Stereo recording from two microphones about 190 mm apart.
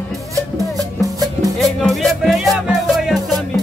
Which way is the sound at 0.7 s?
20° right (ahead or behind).